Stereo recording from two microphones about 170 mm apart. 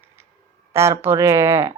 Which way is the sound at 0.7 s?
15° right (ahead or behind).